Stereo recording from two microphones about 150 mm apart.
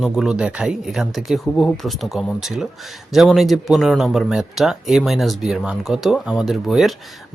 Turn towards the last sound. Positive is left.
turn(degrees=0)  # may be behind; listen again after turning